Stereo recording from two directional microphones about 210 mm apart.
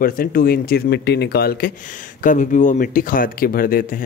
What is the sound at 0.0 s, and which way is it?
Speech, 45° left (ahead or behind).